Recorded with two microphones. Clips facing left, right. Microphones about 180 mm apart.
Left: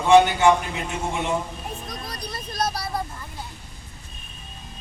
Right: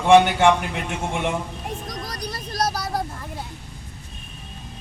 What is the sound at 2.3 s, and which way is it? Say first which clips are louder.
Speech: right 2 dB; 40° right (ahead or behind).